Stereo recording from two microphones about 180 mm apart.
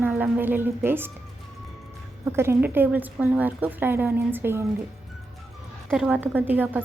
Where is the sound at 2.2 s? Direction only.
15° right (ahead or behind).